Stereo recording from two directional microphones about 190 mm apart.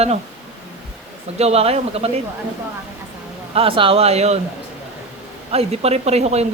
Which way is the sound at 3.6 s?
30° right (ahead or behind).